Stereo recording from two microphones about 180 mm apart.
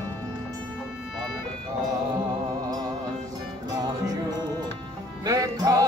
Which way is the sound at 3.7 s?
20° right (ahead or behind).